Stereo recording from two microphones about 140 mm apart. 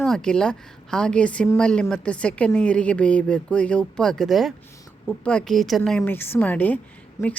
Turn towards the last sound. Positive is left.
turn(degrees=25)  # may be behind; listen again after turning